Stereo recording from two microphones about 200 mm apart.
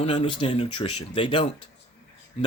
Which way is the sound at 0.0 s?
30° left (ahead or behind).